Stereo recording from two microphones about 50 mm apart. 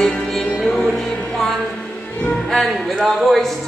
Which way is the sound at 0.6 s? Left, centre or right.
Centre.